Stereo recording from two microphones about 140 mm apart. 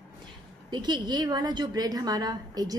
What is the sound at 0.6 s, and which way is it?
A woman's voice, 35° right (ahead or behind).